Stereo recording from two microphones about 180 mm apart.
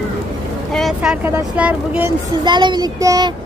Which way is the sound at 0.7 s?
Centre (ahead or behind).